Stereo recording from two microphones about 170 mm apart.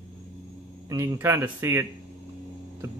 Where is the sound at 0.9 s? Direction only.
20° right (ahead or behind).